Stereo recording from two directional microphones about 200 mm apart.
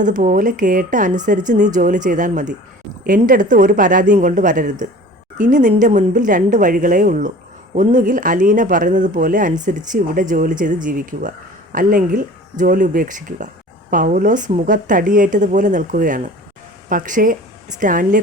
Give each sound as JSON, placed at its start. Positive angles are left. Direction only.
{"t": 0.0, "sound": "speech", "side_deg": -40}